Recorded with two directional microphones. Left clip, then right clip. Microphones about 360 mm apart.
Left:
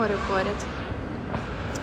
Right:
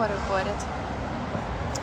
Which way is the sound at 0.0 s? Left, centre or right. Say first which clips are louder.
Left 1 dB; centre.